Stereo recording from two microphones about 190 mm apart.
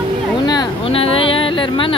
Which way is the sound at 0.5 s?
25° left (ahead or behind).